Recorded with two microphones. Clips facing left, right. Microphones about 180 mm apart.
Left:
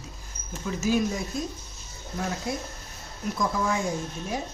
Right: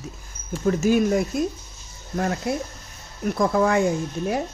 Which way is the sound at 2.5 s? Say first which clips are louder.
Right 6 dB; 60° right (ahead or behind).